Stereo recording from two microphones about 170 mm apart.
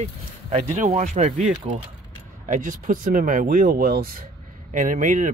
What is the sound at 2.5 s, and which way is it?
Speech, 50° right (ahead or behind).